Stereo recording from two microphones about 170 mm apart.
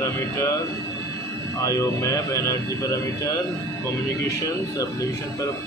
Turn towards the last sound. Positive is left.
turn(degrees=20)  # may be behind; listen again after turning